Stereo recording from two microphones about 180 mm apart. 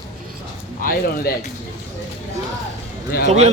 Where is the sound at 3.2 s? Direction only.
40° right (ahead or behind).